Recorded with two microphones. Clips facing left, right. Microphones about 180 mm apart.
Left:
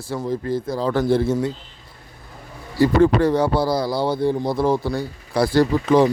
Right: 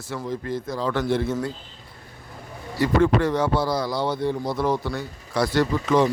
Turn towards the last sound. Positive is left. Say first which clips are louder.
# left 4 dB
turn(degrees=35)  # may be behind; listen again after turning